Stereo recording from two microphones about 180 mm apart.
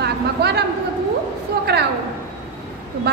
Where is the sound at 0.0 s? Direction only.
65° right (ahead or behind).